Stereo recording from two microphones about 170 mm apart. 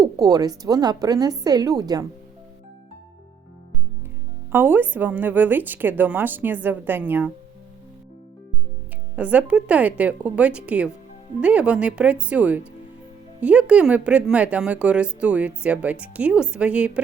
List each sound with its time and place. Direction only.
0.0 s a woman's voice: 20° right (ahead or behind)
4.5 s a woman's voice: 10° right (ahead or behind)
9.1 s a woman's voice: 10° right (ahead or behind)